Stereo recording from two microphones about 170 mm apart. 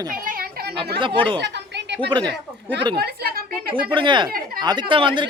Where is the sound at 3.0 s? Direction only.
65° right (ahead or behind).